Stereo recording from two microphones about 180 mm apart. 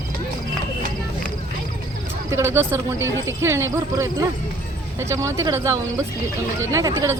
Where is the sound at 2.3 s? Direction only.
15° right (ahead or behind).